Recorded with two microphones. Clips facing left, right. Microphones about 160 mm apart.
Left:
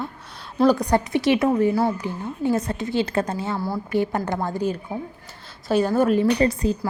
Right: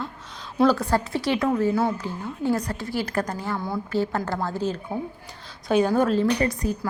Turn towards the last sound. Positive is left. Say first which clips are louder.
# left 4 dB
turn(degrees=25)  # may be behind; listen again after turning